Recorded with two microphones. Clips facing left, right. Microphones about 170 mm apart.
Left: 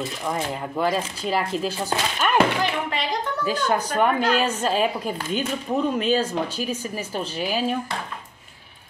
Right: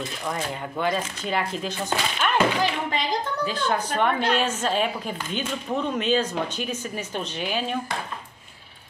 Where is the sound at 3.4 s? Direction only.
45° left (ahead or behind).